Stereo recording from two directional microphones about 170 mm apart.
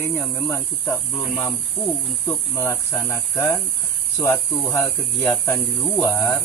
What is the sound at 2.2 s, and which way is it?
Speech, 15° left (ahead or behind).